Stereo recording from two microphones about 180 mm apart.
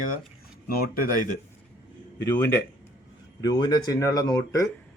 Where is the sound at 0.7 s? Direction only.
55° left (ahead or behind).